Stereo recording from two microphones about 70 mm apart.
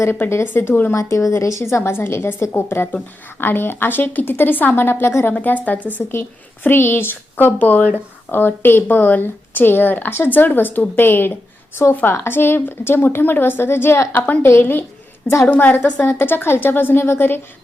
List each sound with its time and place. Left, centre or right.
0.0 s a woman's voice: left
0.9 s a woman's voice: left
5.3 s a woman's voice: left
6.1 s a woman's voice: left